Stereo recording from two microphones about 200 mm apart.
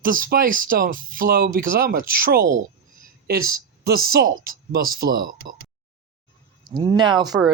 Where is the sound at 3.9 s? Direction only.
45° right (ahead or behind).